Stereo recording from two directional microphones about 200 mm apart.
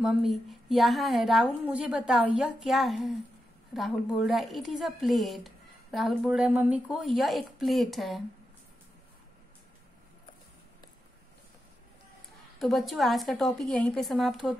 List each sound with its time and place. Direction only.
0.0 s a woman's voice: centre (ahead or behind)
12.5 s a woman's voice: centre (ahead or behind)